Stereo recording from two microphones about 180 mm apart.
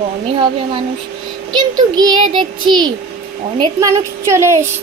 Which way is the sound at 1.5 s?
25° right (ahead or behind).